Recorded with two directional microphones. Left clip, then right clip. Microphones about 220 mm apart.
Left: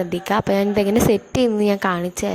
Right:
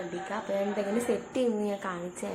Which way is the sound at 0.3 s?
45° left (ahead or behind).